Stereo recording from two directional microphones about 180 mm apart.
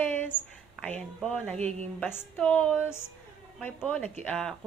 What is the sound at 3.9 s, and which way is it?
Speech, 5° left (ahead or behind).